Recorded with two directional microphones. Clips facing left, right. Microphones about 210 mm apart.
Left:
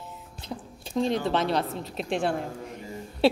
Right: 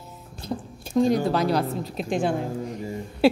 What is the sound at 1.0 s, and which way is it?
Speech, 45° right (ahead or behind).